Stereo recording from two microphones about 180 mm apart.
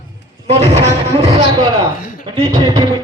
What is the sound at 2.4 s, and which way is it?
Speech, 20° right (ahead or behind).